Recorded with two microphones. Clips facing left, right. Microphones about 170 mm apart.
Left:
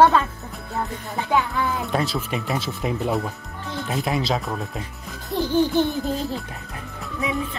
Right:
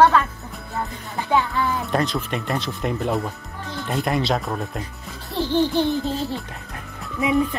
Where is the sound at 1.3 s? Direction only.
Centre (ahead or behind).